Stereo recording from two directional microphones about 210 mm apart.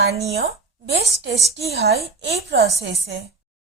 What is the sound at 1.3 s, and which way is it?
Speech, 30° right (ahead or behind).